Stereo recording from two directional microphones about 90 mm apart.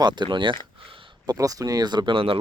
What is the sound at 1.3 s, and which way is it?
Speech, 40° right (ahead or behind).